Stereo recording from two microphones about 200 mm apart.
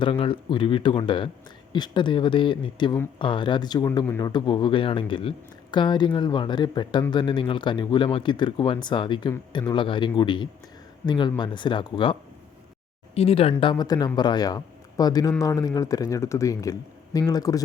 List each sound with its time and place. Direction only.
0.0 s speech: 25° left (ahead or behind)
13.1 s speech: 30° left (ahead or behind)